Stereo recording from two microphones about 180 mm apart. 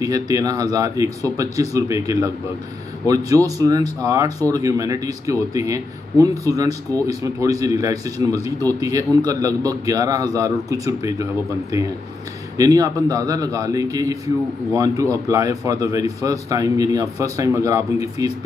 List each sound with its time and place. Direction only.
0.0 s a man's voice: 20° right (ahead or behind)
12.5 s a man's voice: 20° right (ahead or behind)